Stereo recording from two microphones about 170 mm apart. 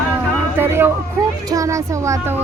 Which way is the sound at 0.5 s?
15° right (ahead or behind).